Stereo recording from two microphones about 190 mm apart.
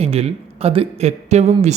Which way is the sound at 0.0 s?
30° right (ahead or behind).